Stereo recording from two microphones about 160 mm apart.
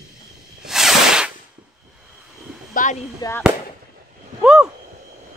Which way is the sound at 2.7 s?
50° left (ahead or behind).